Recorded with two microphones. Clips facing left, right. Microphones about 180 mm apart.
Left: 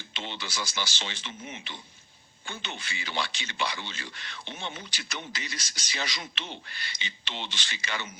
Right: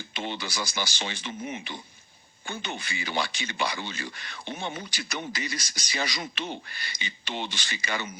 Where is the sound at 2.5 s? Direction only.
15° right (ahead or behind).